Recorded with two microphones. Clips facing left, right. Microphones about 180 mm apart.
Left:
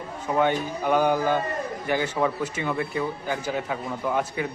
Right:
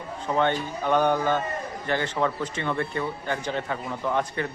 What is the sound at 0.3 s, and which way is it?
A man's voice, 10° left (ahead or behind).